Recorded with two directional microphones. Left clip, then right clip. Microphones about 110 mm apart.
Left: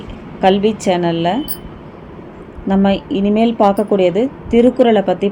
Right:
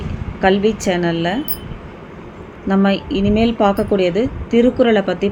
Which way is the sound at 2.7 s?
35° left (ahead or behind).